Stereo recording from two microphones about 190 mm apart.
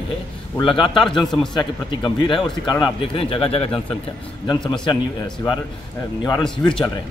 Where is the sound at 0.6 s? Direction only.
25° left (ahead or behind).